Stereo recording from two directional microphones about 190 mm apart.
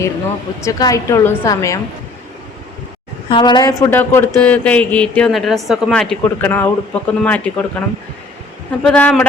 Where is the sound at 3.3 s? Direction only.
25° left (ahead or behind); by 7.5 s 10° left (ahead or behind).